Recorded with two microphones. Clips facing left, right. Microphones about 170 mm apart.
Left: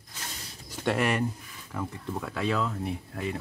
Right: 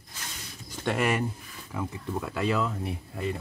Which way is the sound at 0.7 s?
Centre (ahead or behind).